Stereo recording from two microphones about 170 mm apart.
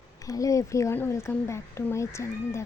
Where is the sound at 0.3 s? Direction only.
20° left (ahead or behind).